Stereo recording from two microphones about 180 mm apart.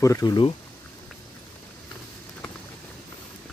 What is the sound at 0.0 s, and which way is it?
Speech, 20° left (ahead or behind).